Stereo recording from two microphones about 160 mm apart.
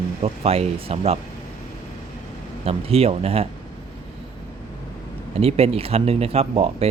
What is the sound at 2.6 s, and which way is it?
Speech, 40° right (ahead or behind).